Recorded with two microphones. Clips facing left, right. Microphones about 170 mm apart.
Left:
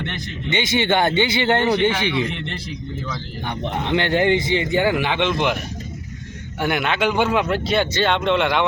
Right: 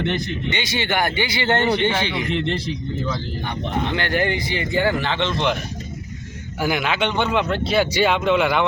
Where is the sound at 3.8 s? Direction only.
20° left (ahead or behind).